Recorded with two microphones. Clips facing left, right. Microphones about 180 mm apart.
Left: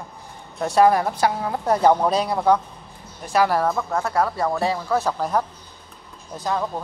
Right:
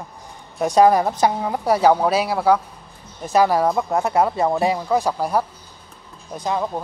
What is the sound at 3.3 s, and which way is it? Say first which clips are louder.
Speech: right 3 dB; 15° right (ahead or behind).